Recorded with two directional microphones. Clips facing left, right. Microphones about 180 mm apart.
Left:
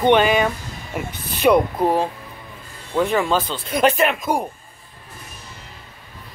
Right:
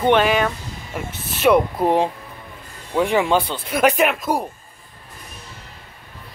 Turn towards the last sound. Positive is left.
turn(degrees=0)  # may be behind; listen again after turning